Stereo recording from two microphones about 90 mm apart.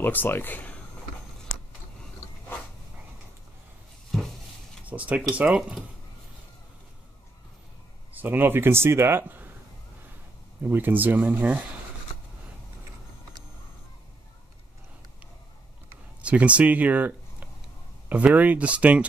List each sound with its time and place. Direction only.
0.0 s speech: 20° left (ahead or behind)
4.1 s a sound: centre (ahead or behind)
4.8 s speech: 15° right (ahead or behind)
8.1 s speech: 20° right (ahead or behind)
10.7 s speech: 20° right (ahead or behind)
16.2 s speech: 15° right (ahead or behind)